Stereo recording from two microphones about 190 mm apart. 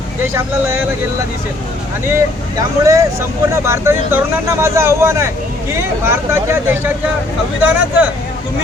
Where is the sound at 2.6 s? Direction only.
15° right (ahead or behind).